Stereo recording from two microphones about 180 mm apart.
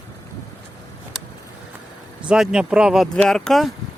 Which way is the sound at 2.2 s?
5° right (ahead or behind).